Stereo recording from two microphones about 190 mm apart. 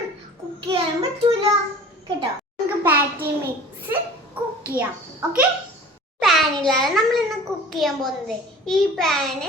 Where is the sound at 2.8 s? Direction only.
10° right (ahead or behind).